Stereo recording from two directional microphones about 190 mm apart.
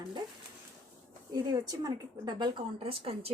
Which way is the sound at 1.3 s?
20° right (ahead or behind).